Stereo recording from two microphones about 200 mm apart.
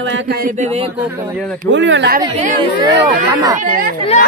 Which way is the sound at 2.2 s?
30° right (ahead or behind).